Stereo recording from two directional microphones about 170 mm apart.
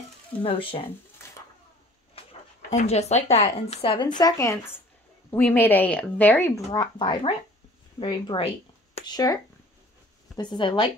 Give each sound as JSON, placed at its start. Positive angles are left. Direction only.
{"t": 0.4, "sound": "speech", "side_deg": 30}
{"t": 2.7, "sound": "speech", "side_deg": 40}
{"t": 4.2, "sound": "speech", "side_deg": 20}